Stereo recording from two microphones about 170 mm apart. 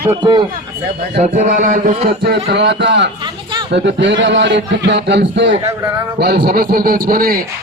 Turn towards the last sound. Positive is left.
turn(degrees=-60)  # may be behind; listen again after turning